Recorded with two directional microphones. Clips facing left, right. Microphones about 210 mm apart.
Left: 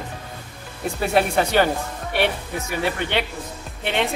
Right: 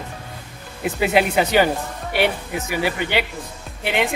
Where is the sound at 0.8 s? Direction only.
5° right (ahead or behind).